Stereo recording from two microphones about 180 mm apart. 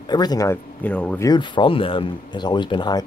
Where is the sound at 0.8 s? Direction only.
10° left (ahead or behind).